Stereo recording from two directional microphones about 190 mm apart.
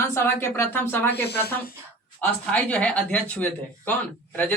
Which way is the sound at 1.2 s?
55° left (ahead or behind).